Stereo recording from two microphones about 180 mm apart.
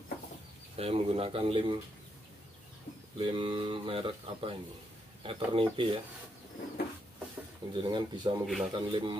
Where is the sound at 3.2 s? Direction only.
30° right (ahead or behind).